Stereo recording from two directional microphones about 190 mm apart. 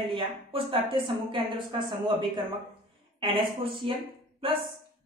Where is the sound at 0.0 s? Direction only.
25° right (ahead or behind).